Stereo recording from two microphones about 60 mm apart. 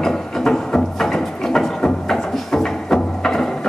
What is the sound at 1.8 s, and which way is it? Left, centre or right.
Music, centre.